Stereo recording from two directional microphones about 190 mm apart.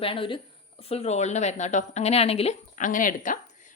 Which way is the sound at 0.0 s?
30° left (ahead or behind).